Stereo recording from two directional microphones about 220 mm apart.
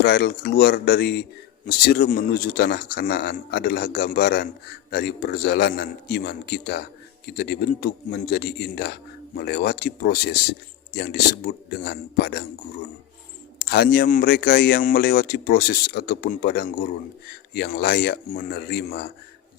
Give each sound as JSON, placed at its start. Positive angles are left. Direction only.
{"t": 0.0, "sound": "speech", "side_deg": 45}
{"t": 13.6, "sound": "speech", "side_deg": 45}